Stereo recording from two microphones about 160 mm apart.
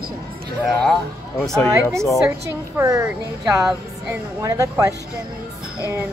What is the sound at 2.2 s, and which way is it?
A woman's voice, 15° right (ahead or behind).